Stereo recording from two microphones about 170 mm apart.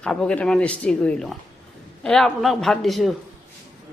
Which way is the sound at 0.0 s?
5° left (ahead or behind).